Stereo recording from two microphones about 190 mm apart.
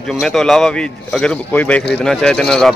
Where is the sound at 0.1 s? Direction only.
Centre (ahead or behind).